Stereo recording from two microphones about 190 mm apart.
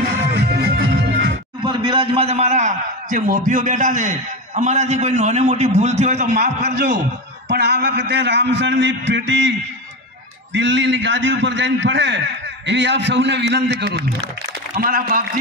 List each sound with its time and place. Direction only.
0.3 s music: 55° right (ahead or behind)
1.6 s a man's voice: 25° right (ahead or behind)
6.3 s a man's voice: 60° right (ahead or behind)
14.8 s a man's voice: 50° right (ahead or behind)